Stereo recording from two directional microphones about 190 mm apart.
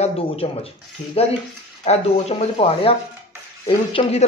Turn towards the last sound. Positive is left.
turn(degrees=30)  # may be behind; listen again after turning